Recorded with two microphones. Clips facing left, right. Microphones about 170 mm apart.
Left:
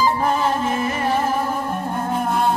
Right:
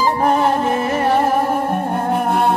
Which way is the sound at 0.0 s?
65° right (ahead or behind).